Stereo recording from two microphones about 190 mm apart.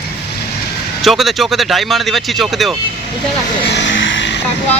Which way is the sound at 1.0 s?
Centre (ahead or behind).